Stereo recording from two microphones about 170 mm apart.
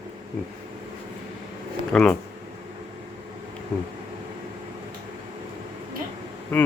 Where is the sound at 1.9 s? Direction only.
5° left (ahead or behind).